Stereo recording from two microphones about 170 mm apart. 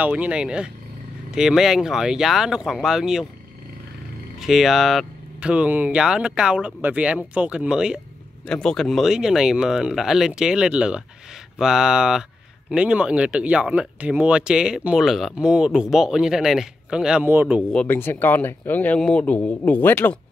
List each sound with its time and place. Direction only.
0.0 s speech: 10° right (ahead or behind)
4.4 s speech: centre (ahead or behind)
17.6 s speech: 10° left (ahead or behind)